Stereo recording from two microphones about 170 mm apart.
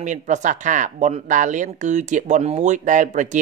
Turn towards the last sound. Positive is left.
turn(degrees=-45)  # may be behind; listen again after turning